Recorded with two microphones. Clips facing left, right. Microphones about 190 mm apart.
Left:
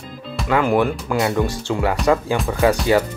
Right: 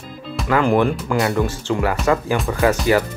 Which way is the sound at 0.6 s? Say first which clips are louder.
Right 1 dB; 5° left (ahead or behind).